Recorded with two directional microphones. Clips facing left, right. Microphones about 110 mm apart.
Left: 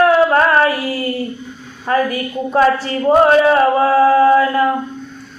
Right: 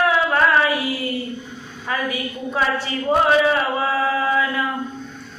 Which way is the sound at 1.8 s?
45° left (ahead or behind).